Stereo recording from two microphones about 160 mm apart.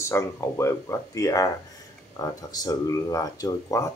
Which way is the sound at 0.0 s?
15° left (ahead or behind).